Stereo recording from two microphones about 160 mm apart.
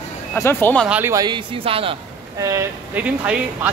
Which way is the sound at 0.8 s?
10° right (ahead or behind).